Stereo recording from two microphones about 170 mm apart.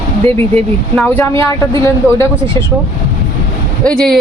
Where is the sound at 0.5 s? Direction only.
10° left (ahead or behind).